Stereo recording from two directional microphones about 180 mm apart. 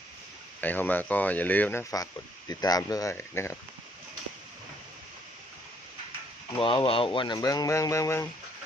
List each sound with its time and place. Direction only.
0.6 s speech: 10° left (ahead or behind)
6.6 s speech: 30° left (ahead or behind)